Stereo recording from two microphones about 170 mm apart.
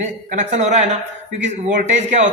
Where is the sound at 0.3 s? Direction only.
45° right (ahead or behind).